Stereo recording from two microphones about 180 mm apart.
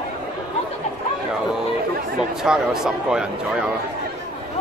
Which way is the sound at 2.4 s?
5° right (ahead or behind).